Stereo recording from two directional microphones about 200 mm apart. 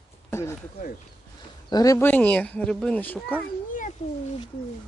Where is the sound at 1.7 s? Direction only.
15° left (ahead or behind).